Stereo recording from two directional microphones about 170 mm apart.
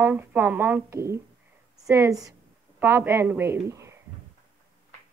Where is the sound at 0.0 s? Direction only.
10° right (ahead or behind).